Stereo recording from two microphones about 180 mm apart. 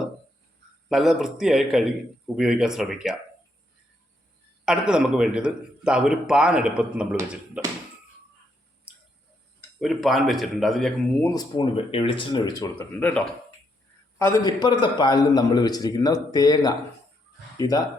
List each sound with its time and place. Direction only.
0.9 s a man's voice: centre (ahead or behind)
4.6 s a man's voice: 5° right (ahead or behind)
9.8 s a man's voice: centre (ahead or behind)
11.2 s a man's voice: 20° left (ahead or behind)
13.0 s a man's voice: 10° left (ahead or behind)